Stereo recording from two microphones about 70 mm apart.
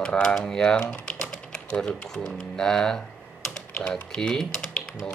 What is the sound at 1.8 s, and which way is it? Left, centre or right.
Speech, centre.